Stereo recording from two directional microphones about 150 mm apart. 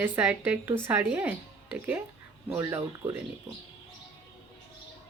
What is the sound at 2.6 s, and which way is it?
Speech, 15° right (ahead or behind).